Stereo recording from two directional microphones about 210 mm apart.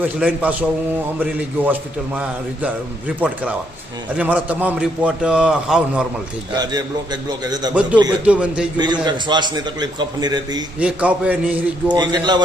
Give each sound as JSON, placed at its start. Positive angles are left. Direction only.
{"t": 0.0, "sound": "a man's voice", "side_deg": -5}
{"t": 6.6, "sound": "a man's voice", "side_deg": -20}
{"t": 7.7, "sound": "a man's voice", "side_deg": -5}
{"t": 8.8, "sound": "a man's voice", "side_deg": -20}
{"t": 10.8, "sound": "a man's voice", "side_deg": -5}
{"t": 11.9, "sound": "a man's voice", "side_deg": -20}